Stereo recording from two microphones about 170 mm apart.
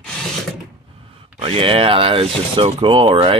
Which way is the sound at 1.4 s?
35° right (ahead or behind).